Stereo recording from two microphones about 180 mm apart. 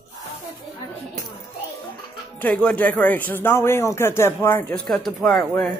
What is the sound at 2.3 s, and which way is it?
Speech, 5° left (ahead or behind).